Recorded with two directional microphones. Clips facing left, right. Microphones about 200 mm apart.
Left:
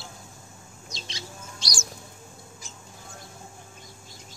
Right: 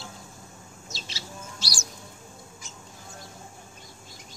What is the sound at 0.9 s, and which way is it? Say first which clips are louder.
Bird: left 1 dB; 5° right (ahead or behind).